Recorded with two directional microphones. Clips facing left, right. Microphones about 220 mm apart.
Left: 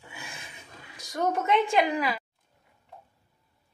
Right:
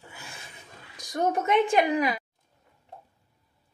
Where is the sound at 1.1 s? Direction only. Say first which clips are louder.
Right 1 dB; 20° right (ahead or behind).